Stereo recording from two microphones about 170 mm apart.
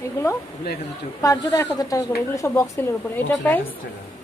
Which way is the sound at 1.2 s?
20° left (ahead or behind).